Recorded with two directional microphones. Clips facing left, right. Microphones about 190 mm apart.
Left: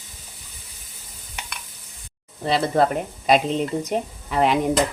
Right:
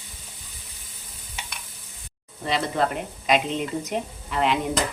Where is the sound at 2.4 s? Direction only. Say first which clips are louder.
Left 5 dB; 35° left (ahead or behind).